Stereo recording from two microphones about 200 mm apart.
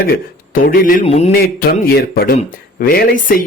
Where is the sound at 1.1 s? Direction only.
30° left (ahead or behind).